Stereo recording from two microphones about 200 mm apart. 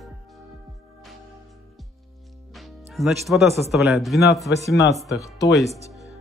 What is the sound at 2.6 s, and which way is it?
Music, centre (ahead or behind).